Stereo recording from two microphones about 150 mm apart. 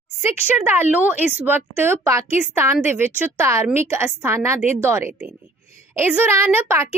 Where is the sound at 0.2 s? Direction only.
15° right (ahead or behind).